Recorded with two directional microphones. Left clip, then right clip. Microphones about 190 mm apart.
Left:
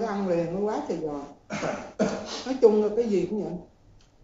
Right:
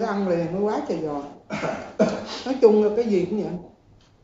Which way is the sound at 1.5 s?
20° left (ahead or behind).